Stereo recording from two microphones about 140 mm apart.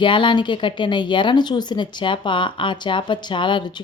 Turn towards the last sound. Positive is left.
turn(degrees=35)  # may be behind; listen again after turning